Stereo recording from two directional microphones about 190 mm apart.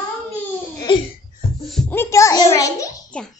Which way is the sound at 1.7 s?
10° left (ahead or behind).